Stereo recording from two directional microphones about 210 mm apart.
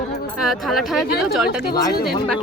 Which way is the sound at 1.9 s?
45° left (ahead or behind).